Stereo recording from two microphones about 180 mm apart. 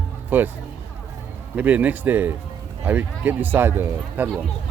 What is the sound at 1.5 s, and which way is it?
Speech, 10° right (ahead or behind).